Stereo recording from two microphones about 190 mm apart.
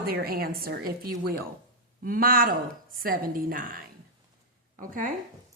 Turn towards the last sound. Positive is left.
turn(degrees=-45)  # may be behind; listen again after turning